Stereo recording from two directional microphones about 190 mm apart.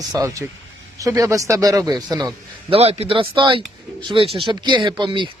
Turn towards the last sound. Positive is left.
turn(degrees=-25)  # may be behind; listen again after turning